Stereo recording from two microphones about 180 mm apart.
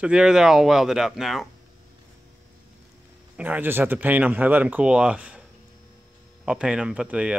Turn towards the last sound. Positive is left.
turn(degrees=-5)  # may be behind; listen again after turning